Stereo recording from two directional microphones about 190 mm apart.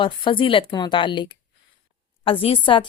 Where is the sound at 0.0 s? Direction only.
25° left (ahead or behind).